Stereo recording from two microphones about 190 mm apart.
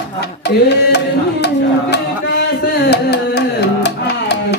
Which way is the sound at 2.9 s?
60° left (ahead or behind).